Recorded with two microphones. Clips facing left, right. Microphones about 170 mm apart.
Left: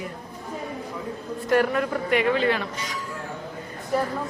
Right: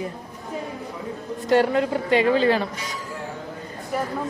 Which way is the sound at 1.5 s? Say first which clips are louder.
Right 3 dB; 25° right (ahead or behind).